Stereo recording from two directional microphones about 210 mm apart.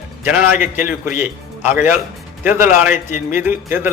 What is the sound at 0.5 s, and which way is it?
Speech, 35° left (ahead or behind).